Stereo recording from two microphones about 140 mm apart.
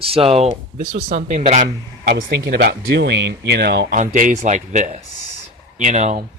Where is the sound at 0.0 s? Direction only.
40° right (ahead or behind); by 2.1 s 65° right (ahead or behind).